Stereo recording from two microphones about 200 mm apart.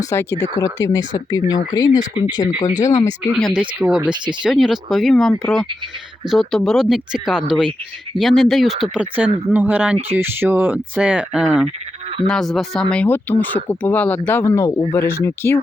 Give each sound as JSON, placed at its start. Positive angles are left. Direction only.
{"t": 0.0, "sound": "speech", "side_deg": 15}
{"t": 2.6, "sound": "speech", "side_deg": 35}
{"t": 3.3, "sound": "speech", "side_deg": 0}